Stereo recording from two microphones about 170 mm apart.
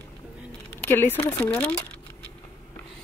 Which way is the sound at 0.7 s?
10° left (ahead or behind).